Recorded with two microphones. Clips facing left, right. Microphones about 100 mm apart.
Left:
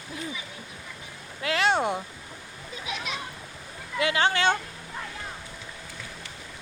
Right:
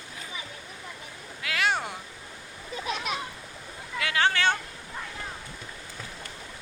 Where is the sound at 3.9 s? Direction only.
20° left (ahead or behind).